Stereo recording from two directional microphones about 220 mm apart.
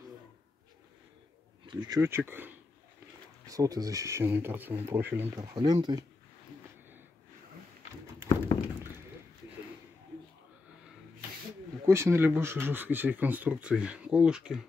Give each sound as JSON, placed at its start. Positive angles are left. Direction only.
{"t": 1.7, "sound": "speech", "side_deg": -20}
{"t": 11.8, "sound": "speech", "side_deg": -10}